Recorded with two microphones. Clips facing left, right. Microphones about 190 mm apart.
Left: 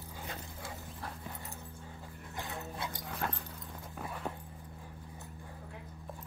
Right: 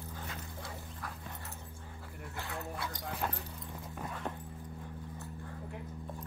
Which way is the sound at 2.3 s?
20° left (ahead or behind).